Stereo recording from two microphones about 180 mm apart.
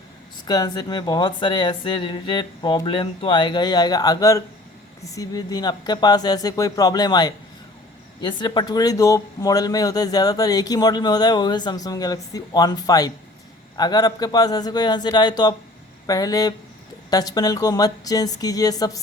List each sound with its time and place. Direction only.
0.4 s speech: 20° left (ahead or behind)